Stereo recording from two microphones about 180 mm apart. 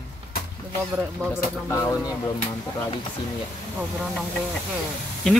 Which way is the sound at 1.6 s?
15° left (ahead or behind).